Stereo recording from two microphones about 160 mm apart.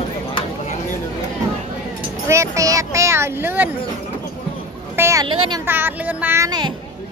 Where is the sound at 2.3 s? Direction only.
20° right (ahead or behind).